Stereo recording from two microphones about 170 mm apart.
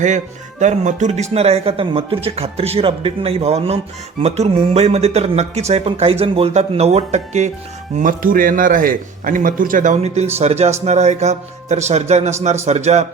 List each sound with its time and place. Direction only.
0.6 s speech: 45° right (ahead or behind)
7.9 s a man's voice: 55° right (ahead or behind)